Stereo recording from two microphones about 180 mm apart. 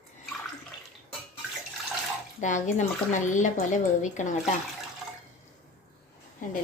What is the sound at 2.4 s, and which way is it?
Speech, 45° left (ahead or behind).